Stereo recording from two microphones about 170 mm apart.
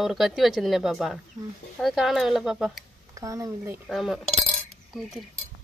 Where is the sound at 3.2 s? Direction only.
20° right (ahead or behind).